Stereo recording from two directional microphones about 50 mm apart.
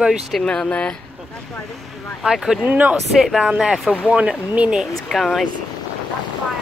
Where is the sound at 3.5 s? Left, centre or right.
Centre.